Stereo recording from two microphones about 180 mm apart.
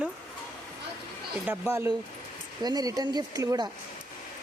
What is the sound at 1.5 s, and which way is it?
Speech, 15° right (ahead or behind).